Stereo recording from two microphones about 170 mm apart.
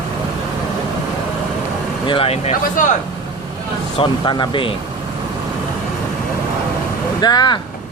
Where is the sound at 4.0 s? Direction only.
25° left (ahead or behind).